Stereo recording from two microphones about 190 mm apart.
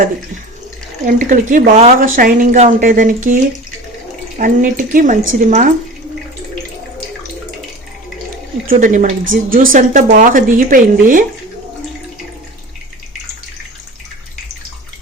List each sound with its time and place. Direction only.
1.0 s a woman's voice: 45° right (ahead or behind)
8.6 s a woman's voice: 45° right (ahead or behind)